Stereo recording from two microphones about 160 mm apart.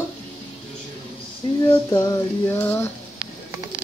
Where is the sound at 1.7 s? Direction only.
25° left (ahead or behind).